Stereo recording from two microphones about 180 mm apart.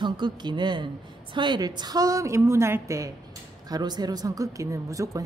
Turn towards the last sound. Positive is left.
turn(degrees=-20)  # may be behind; listen again after turning